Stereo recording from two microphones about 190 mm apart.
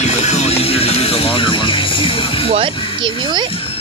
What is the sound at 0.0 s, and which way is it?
Music, 35° left (ahead or behind).